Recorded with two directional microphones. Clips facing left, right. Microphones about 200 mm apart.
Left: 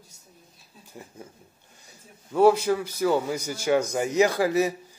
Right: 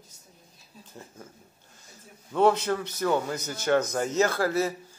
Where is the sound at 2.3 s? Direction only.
10° left (ahead or behind).